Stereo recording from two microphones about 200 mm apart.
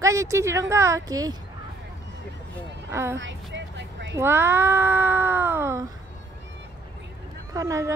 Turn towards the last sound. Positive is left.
turn(degrees=-15)  # may be behind; listen again after turning